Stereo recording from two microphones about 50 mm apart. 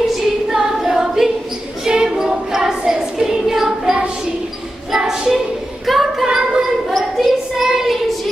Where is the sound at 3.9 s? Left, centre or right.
Centre.